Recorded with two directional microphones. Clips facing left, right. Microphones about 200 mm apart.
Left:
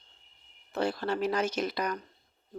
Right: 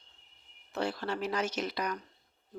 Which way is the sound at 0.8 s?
45° left (ahead or behind).